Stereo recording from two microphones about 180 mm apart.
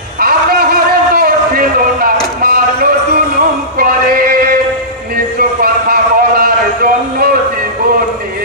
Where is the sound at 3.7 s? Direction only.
55° right (ahead or behind).